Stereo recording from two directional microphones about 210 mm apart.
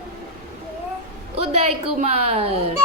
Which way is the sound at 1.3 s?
30° right (ahead or behind).